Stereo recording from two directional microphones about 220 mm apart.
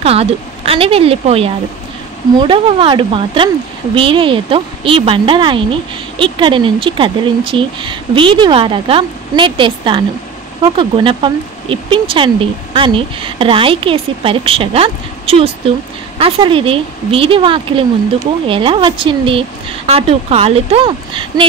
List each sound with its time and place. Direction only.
0.0 s speech: 25° right (ahead or behind)